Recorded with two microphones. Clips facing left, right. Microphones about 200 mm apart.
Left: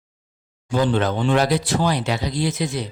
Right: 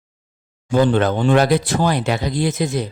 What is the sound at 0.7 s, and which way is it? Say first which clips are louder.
Speech: right 4 dB; 50° right (ahead or behind).